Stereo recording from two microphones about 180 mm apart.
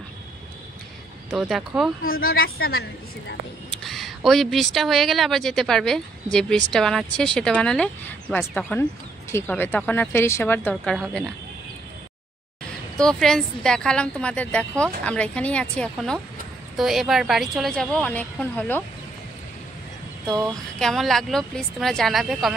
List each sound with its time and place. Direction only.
1.3 s speech: centre (ahead or behind)
2.0 s a woman's voice: 55° left (ahead or behind)
3.7 s a woman's voice: centre (ahead or behind)
12.9 s a woman's voice: 5° left (ahead or behind)
20.2 s a sound: 20° right (ahead or behind)
20.8 s speech: centre (ahead or behind)